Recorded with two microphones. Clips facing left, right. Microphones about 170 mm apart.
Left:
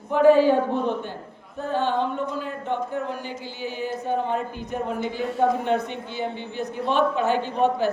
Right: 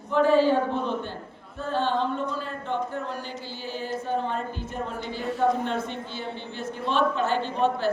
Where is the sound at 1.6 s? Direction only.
15° left (ahead or behind).